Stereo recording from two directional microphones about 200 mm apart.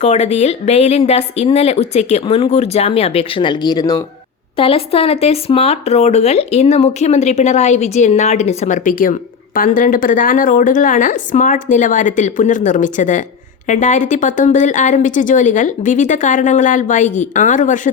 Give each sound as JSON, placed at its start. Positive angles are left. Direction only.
{"t": 0.0, "sound": "speech", "side_deg": 35}